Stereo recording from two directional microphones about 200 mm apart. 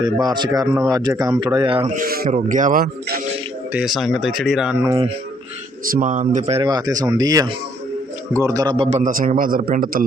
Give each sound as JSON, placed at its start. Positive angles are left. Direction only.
{"t": 0.0, "sound": "speech", "side_deg": -20}
{"t": 1.9, "sound": "a man's voice", "side_deg": -45}
{"t": 3.7, "sound": "speech", "side_deg": -5}
{"t": 4.8, "sound": "speech", "side_deg": -15}
{"t": 5.8, "sound": "a man's voice", "side_deg": -45}